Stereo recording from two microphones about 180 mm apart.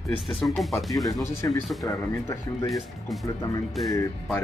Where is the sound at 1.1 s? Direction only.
20° left (ahead or behind).